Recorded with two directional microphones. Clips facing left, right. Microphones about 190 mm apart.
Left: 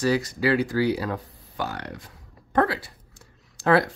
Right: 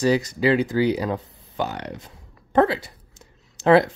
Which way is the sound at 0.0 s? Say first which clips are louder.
Right 3 dB; 20° right (ahead or behind).